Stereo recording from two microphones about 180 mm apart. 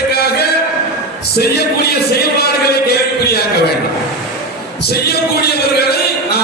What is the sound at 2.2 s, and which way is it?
A man's voice, 60° left (ahead or behind).